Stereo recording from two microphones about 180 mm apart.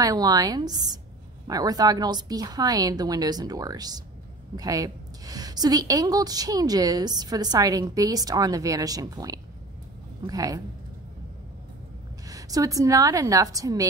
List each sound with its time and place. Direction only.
0.0 s a woman's voice: 20° right (ahead or behind)
12.3 s a woman's voice: 20° right (ahead or behind)